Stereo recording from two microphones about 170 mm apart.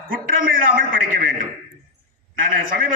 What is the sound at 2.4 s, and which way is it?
Speech, 55° right (ahead or behind).